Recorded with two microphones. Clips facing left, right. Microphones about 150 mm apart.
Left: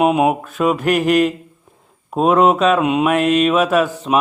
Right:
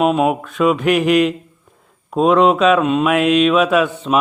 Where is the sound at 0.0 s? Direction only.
15° left (ahead or behind).